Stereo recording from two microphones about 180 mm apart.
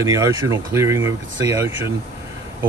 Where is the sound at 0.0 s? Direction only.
15° right (ahead or behind).